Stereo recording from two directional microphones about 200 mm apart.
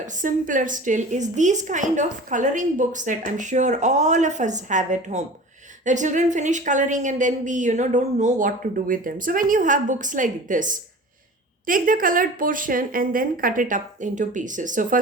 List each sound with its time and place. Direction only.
0.0 s a woman's voice: 40° right (ahead or behind)